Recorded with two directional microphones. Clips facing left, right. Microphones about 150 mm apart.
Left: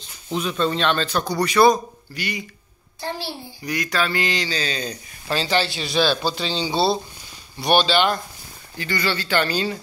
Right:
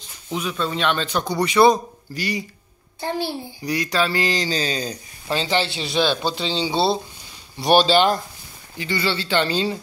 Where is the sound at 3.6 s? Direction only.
30° right (ahead or behind).